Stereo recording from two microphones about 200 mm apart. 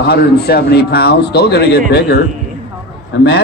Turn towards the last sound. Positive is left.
turn(degrees=60)  # may be behind; listen again after turning